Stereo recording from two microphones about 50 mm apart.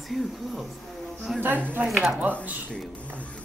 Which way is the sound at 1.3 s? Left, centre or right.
Centre.